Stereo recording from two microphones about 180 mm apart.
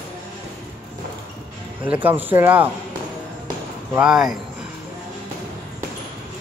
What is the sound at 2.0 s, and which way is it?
Speech, 10° right (ahead or behind).